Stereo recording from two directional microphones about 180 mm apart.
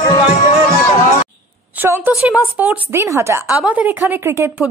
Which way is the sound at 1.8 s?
10° right (ahead or behind).